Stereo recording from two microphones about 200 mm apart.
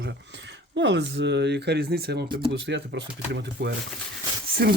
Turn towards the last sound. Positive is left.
turn(degrees=-50)  # may be behind; listen again after turning